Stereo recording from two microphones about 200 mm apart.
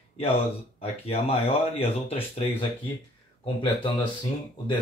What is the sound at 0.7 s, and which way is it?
Speech, 30° left (ahead or behind).